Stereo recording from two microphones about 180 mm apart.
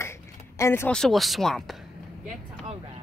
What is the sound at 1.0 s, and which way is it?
Speech, centre (ahead or behind).